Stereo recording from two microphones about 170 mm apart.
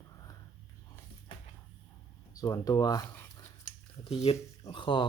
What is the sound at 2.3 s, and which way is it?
Speech, 20° left (ahead or behind).